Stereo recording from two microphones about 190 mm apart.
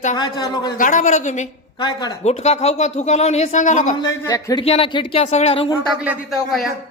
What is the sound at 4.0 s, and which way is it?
Speech, 20° left (ahead or behind).